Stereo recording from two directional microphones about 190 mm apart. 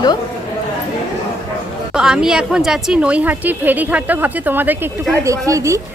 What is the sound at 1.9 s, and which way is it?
Speech, 5° right (ahead or behind).